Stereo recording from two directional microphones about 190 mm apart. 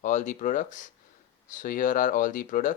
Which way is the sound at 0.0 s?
40° left (ahead or behind).